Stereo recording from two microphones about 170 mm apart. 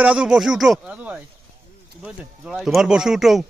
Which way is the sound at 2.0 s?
5° right (ahead or behind).